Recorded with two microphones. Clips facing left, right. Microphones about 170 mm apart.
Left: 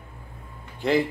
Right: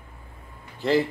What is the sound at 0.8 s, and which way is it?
Speech, centre (ahead or behind).